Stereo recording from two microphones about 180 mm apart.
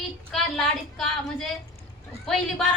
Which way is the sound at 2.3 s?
Centre (ahead or behind).